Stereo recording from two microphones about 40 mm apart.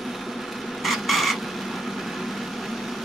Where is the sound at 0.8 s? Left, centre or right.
Centre.